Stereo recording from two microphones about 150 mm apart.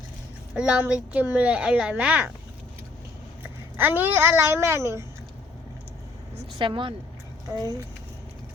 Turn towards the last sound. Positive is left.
turn(degrees=-25)  # may be behind; listen again after turning